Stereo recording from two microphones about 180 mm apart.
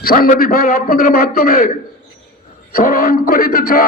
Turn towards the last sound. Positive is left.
turn(degrees=55)  # may be behind; listen again after turning